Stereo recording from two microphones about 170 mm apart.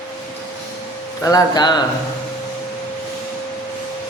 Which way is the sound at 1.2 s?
25° left (ahead or behind).